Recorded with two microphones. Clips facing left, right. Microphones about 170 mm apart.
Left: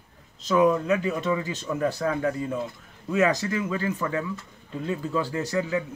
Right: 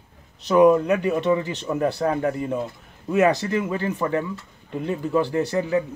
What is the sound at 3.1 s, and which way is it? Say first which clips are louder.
Speech: right 4 dB; 55° right (ahead or behind).